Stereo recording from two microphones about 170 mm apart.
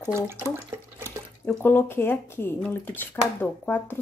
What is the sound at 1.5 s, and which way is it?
Speech, 10° left (ahead or behind).